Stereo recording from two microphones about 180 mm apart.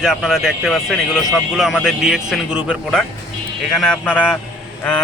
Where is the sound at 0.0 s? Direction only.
Centre (ahead or behind).